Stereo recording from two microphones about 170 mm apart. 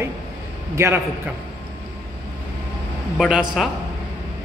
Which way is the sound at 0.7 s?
15° right (ahead or behind).